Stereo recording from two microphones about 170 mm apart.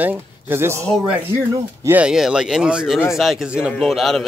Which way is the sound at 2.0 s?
5° right (ahead or behind).